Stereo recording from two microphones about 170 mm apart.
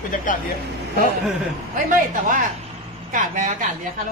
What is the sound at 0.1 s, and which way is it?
Speech, 55° left (ahead or behind).